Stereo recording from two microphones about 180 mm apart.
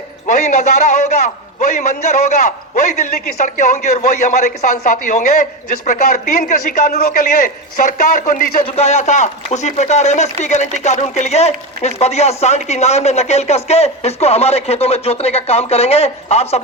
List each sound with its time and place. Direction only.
0.3 s a man's voice: 45° left (ahead or behind)
8.6 s speech: 35° left (ahead or behind)